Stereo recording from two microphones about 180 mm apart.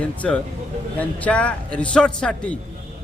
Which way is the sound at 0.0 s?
5° left (ahead or behind).